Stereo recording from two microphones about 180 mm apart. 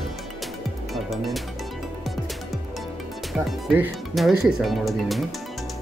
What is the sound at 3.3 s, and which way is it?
Speech, 5° right (ahead or behind).